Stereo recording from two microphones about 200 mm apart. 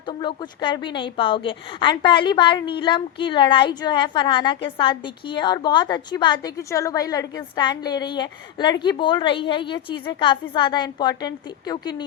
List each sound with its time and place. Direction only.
0.1 s a woman's voice: 25° left (ahead or behind)